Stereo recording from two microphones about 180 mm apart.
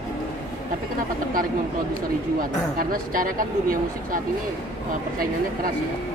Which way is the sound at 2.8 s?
50° right (ahead or behind).